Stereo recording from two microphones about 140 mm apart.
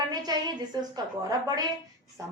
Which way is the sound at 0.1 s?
30° right (ahead or behind).